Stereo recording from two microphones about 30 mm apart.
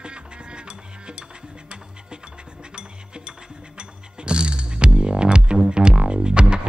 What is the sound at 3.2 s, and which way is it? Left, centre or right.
Music, right.